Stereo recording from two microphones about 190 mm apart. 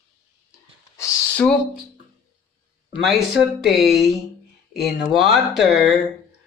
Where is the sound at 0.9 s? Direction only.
15° left (ahead or behind).